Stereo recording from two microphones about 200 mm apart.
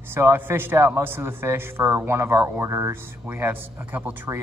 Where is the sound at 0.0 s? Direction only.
10° right (ahead or behind).